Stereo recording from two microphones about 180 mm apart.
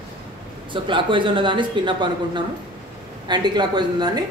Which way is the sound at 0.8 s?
25° right (ahead or behind).